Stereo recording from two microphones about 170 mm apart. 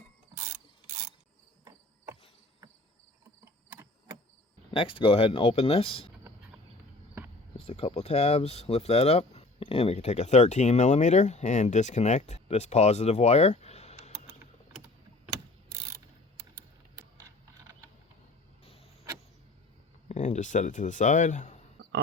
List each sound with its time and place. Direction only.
3.4 s a sound: 15° right (ahead or behind)
4.7 s speech: 30° left (ahead or behind)
7.5 s speech: 35° left (ahead or behind)
18.6 s power windows: 35° left (ahead or behind)
20.1 s speech: 45° left (ahead or behind)